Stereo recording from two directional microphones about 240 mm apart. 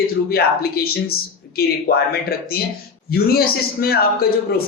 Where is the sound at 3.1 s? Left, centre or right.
Left.